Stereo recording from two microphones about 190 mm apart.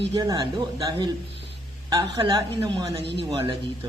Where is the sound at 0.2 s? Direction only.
20° right (ahead or behind).